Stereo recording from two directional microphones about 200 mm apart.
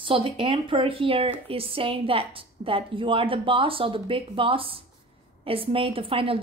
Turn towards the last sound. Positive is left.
turn(degrees=-25)  # may be behind; listen again after turning